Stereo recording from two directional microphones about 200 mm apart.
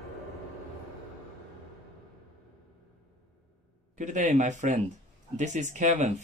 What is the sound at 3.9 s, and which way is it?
Speech, 40° right (ahead or behind).